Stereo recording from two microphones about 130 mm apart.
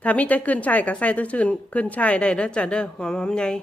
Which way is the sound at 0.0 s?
10° left (ahead or behind).